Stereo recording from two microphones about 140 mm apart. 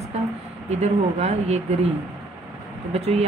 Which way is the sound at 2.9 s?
50° right (ahead or behind).